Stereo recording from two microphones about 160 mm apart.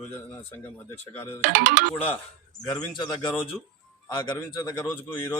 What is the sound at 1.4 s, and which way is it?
Speech, 60° right (ahead or behind).